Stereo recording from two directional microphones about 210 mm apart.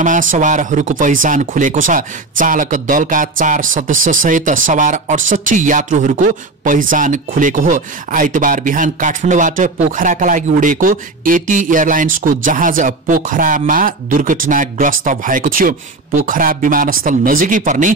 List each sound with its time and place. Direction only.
0.0 s speech: 40° right (ahead or behind)